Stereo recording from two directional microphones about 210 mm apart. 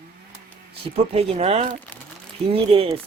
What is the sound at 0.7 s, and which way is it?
Speech, 30° right (ahead or behind).